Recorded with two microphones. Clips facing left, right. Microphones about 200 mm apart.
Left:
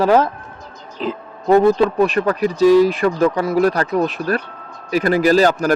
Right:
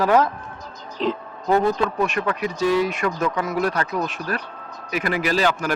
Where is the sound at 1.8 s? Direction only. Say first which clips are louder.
Left 7 dB; 35° left (ahead or behind).